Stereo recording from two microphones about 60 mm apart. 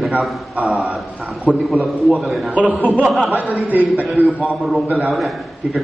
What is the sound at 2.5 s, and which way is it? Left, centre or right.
Speech, right.